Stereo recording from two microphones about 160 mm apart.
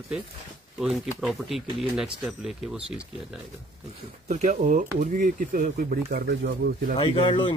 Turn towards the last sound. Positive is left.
turn(degrees=30)  # may be behind; listen again after turning